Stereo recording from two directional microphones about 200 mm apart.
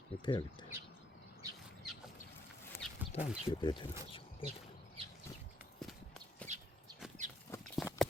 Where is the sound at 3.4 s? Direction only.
25° left (ahead or behind).